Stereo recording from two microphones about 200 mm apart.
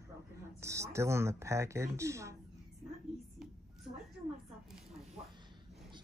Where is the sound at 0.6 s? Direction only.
15° right (ahead or behind).